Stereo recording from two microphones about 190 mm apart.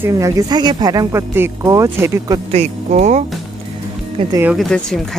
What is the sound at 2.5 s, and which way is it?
Speech, 35° right (ahead or behind).